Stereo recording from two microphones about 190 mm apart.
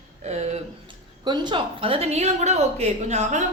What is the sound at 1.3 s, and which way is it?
A woman's voice, 25° right (ahead or behind).